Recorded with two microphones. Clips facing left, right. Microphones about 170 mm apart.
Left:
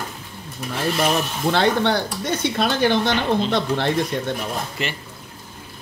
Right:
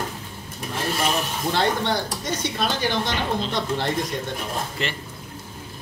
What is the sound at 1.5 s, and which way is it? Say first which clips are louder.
Speech: left 4 dB; 65° left (ahead or behind).